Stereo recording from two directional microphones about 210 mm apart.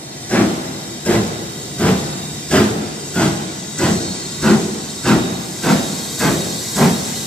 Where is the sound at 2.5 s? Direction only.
5° left (ahead or behind).